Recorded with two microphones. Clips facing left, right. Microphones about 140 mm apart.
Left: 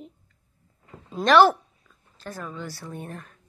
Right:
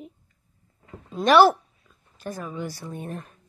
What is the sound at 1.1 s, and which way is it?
Speech, 5° right (ahead or behind).